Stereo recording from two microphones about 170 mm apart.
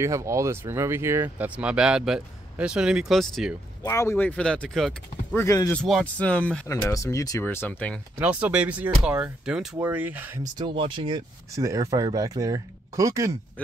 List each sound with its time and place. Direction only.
0.0 s speech: 15° right (ahead or behind); by 3.5 s centre (ahead or behind)
3.8 s speech: 15° left (ahead or behind); by 4.9 s centre (ahead or behind)
5.3 s speech: 15° left (ahead or behind)
5.8 s speech: 5° left (ahead or behind)
6.7 s speech: 20° left (ahead or behind)
8.2 s speech: 10° right (ahead or behind)
10.6 s speech: 30° right (ahead or behind)
11.5 s speech: 20° right (ahead or behind)